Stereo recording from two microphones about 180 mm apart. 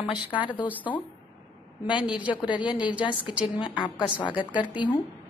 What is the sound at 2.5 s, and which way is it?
Speech, 25° left (ahead or behind).